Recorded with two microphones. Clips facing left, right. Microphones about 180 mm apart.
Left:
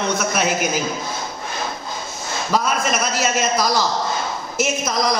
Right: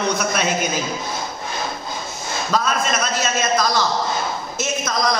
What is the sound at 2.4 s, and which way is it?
A man's voice, 10° left (ahead or behind).